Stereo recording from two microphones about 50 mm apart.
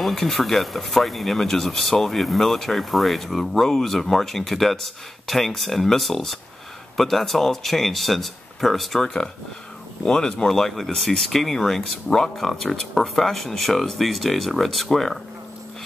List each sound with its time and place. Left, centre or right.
0.0 s speech: centre
10.0 s speech: centre